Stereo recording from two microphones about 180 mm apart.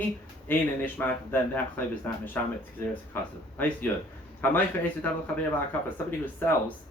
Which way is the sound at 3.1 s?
10° left (ahead or behind).